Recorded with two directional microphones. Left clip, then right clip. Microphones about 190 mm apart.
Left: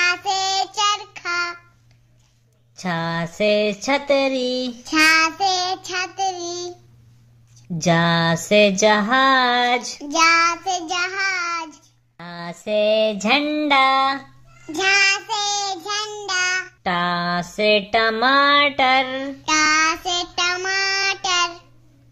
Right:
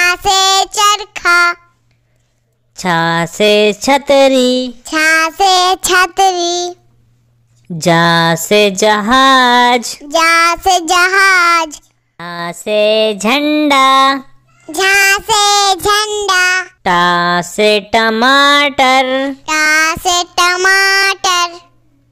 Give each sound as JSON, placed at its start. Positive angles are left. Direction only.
{"t": 0.0, "sound": "child singing", "side_deg": -55}
{"t": 2.7, "sound": "child singing", "side_deg": -45}
{"t": 7.7, "sound": "a sound", "side_deg": -40}
{"t": 10.2, "sound": "child singing", "side_deg": -50}
{"t": 12.2, "sound": "a sound", "side_deg": -35}
{"t": 14.7, "sound": "child singing", "side_deg": -50}